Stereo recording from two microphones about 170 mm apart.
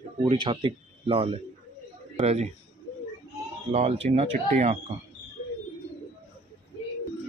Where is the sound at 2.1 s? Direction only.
45° right (ahead or behind).